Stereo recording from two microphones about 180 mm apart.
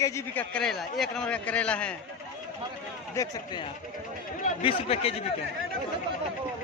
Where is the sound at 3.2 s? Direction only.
20° left (ahead or behind).